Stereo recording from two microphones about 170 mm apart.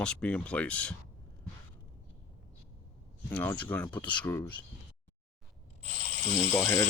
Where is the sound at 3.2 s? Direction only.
10° left (ahead or behind).